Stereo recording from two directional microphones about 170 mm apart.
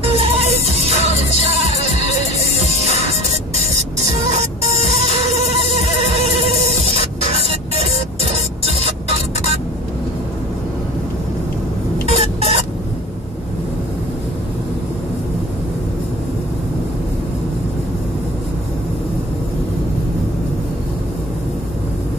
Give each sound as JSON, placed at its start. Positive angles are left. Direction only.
{"t": 0.0, "sound": "music", "side_deg": -35}
{"t": 2.3, "sound": "music", "side_deg": 40}
{"t": 2.6, "sound": "music", "side_deg": -35}
{"t": 4.3, "sound": "music", "side_deg": -40}
{"t": 12.1, "sound": "a sound", "side_deg": -35}